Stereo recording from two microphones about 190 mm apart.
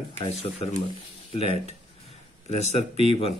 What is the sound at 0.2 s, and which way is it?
Speech, 30° left (ahead or behind).